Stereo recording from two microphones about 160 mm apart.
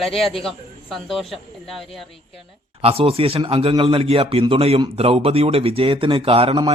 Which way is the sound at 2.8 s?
35° right (ahead or behind).